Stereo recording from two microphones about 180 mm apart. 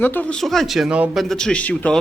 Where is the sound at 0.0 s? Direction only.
10° left (ahead or behind).